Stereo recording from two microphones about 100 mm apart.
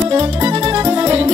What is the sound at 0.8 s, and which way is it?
Music, 40° right (ahead or behind).